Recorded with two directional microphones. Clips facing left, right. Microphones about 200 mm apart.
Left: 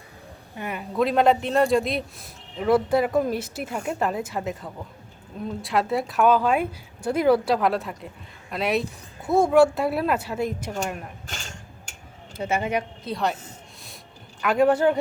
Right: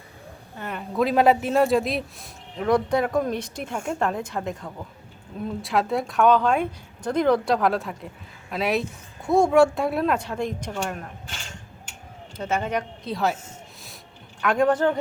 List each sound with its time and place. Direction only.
0.5 s speech: 10° left (ahead or behind)
0.9 s a man's voice: centre (ahead or behind)
12.4 s speech: 10° left (ahead or behind)
14.4 s speech: 5° left (ahead or behind)